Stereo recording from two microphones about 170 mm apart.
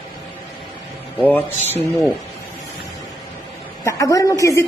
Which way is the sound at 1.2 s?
10° left (ahead or behind).